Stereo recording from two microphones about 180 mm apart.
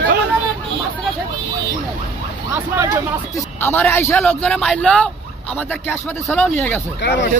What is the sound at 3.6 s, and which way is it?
Speech, 10° left (ahead or behind).